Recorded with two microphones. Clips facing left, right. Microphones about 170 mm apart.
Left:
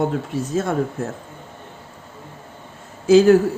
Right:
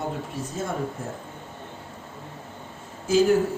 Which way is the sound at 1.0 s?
75° left (ahead or behind).